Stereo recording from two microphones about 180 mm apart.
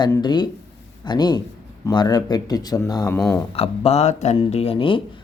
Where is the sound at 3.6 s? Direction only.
35° left (ahead or behind).